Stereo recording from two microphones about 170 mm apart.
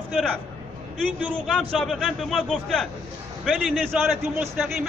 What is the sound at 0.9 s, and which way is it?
A man's voice, 5° left (ahead or behind).